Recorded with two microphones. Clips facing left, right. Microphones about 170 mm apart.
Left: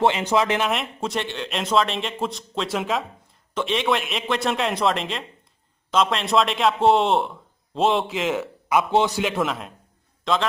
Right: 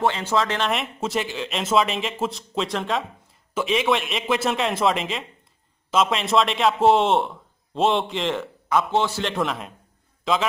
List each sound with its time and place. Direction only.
0.0 s speech: 15° left (ahead or behind)
0.7 s a man's voice: centre (ahead or behind); by 9.2 s 15° left (ahead or behind)
9.2 s a man's voice: centre (ahead or behind)